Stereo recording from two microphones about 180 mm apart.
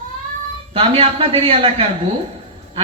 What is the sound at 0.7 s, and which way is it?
A man's voice, 30° right (ahead or behind).